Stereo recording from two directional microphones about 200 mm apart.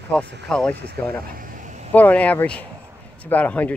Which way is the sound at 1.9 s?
10° left (ahead or behind).